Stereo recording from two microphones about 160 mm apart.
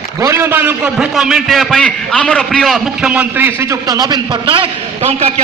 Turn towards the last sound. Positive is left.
turn(degrees=-40)  # may be behind; listen again after turning